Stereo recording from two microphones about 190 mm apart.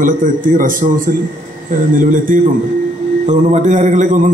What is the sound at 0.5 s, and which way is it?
A man's voice, 45° right (ahead or behind).